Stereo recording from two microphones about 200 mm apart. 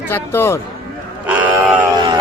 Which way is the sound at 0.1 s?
10° left (ahead or behind).